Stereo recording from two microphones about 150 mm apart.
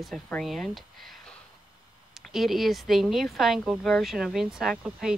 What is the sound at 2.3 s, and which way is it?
Speech, centre (ahead or behind).